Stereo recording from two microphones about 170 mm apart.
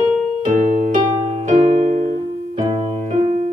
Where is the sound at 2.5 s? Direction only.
45° right (ahead or behind).